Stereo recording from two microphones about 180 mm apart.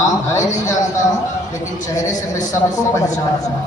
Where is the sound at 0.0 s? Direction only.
20° left (ahead or behind).